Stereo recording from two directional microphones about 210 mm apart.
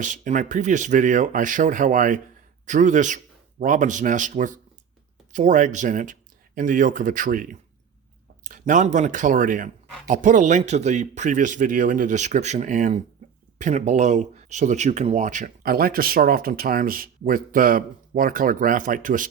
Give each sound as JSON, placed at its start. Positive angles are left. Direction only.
{"t": 0.0, "sound": "speech", "side_deg": -40}